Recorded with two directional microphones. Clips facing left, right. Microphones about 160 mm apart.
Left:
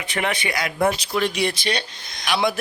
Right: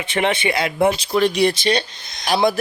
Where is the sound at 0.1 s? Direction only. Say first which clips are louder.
Right 5 dB; 25° right (ahead or behind).